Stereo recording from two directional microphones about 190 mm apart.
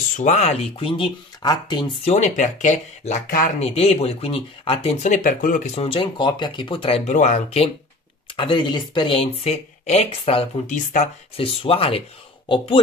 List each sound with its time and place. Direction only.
0.2 s speech: 35° left (ahead or behind)
3.5 s speech: 35° left (ahead or behind)